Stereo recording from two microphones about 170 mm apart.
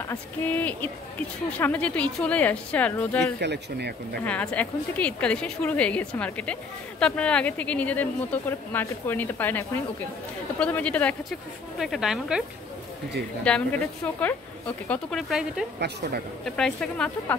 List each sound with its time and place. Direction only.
0.0 s a woman's voice: 10° left (ahead or behind)
3.3 s speech: 80° right
4.2 s a woman's voice: 10° left (ahead or behind)